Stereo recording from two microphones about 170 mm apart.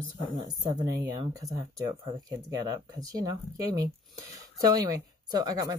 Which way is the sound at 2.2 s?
25° right (ahead or behind).